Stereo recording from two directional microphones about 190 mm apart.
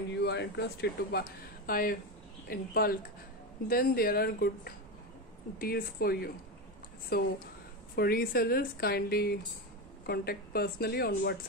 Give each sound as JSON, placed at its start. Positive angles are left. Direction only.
{"t": 0.1, "sound": "speech", "side_deg": 60}
{"t": 1.7, "sound": "a woman's voice", "side_deg": 50}